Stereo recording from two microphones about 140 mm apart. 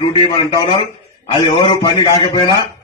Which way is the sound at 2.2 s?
35° left (ahead or behind).